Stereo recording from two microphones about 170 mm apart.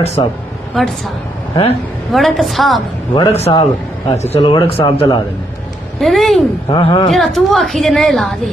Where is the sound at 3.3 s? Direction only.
35° left (ahead or behind).